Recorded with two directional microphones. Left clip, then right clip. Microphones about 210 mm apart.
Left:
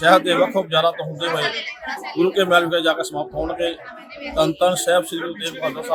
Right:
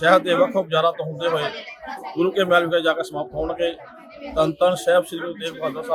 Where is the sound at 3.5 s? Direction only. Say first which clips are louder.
Right 1 dB; 30° right (ahead or behind).